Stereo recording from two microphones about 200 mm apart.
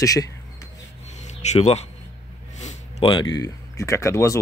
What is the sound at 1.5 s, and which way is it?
Speech, 35° left (ahead or behind).